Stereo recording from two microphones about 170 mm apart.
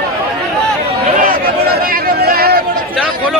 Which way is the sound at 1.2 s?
60° right (ahead or behind).